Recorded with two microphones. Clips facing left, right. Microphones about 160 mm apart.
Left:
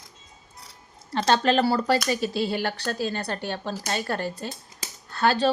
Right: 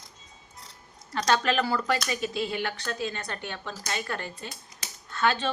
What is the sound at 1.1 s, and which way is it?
A woman's voice, 30° left (ahead or behind).